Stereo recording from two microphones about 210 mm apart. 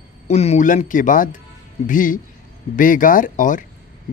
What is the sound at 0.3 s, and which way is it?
Speech, 30° left (ahead or behind).